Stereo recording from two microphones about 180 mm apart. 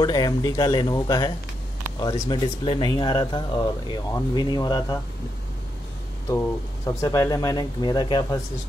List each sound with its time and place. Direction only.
0.0 s speech: 20° left (ahead or behind)
6.2 s speech: 15° left (ahead or behind)